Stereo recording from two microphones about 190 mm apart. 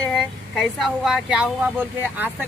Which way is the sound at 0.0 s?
5° left (ahead or behind).